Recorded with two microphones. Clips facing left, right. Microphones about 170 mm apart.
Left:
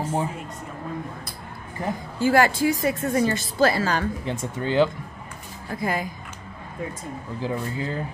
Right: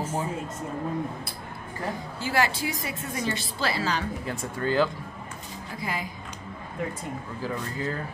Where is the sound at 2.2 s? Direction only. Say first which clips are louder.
Left 8 dB; 50° left (ahead or behind).